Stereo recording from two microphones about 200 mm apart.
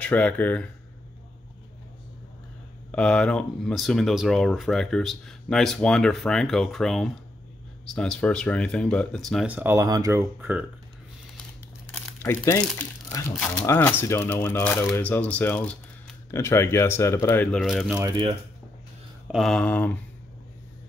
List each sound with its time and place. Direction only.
0.0 s speech: 5° left (ahead or behind)
2.9 s speech: 5° left (ahead or behind); by 10.2 s 15° right (ahead or behind)
11.9 s crumpling: 10° left (ahead or behind)
13.3 s speech: 5° left (ahead or behind)
17.9 s speech: 20° right (ahead or behind)
19.3 s speech: centre (ahead or behind)